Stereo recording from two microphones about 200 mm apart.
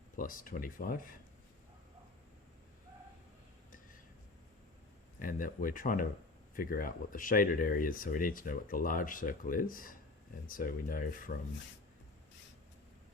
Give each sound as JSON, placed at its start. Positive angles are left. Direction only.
{"t": 0.2, "sound": "speech", "side_deg": 45}
{"t": 5.2, "sound": "speech", "side_deg": 45}